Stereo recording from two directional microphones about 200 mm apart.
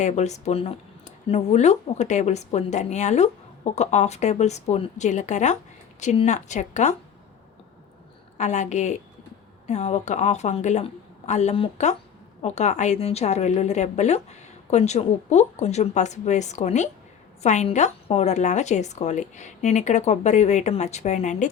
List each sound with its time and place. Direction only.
0.0 s speech: 35° left (ahead or behind)
8.4 s speech: 35° left (ahead or behind)